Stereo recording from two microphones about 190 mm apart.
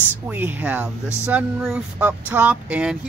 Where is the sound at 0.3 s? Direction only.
10° right (ahead or behind).